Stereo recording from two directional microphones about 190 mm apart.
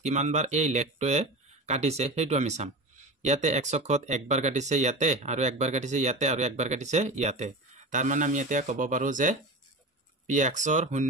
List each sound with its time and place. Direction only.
0.0 s speech: 35° right (ahead or behind)